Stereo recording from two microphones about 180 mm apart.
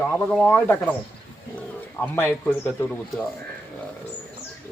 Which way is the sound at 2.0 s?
10° left (ahead or behind).